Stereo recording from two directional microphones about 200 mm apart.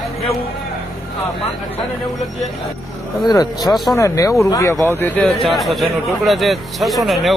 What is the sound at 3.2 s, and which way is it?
Speech, 20° left (ahead or behind).